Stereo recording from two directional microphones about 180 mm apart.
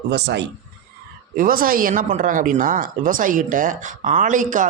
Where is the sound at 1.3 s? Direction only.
50° right (ahead or behind).